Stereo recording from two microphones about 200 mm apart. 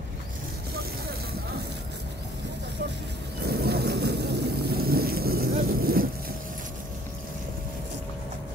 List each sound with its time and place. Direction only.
3.4 s vehicle: 55° right (ahead or behind)